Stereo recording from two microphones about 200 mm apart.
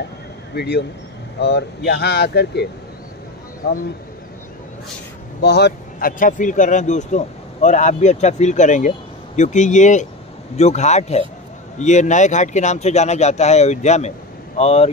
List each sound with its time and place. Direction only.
0.6 s speech: 55° left (ahead or behind)
5.4 s speech: 55° left (ahead or behind); by 14.9 s 30° left (ahead or behind)